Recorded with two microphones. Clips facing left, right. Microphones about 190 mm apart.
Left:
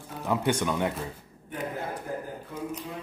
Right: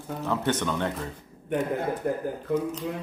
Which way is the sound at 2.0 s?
65° right (ahead or behind).